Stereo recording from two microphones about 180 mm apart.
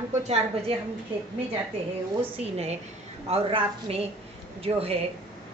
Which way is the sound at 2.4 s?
35° right (ahead or behind).